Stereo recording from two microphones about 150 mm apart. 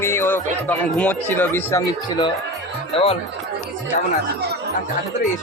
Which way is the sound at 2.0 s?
30° left (ahead or behind).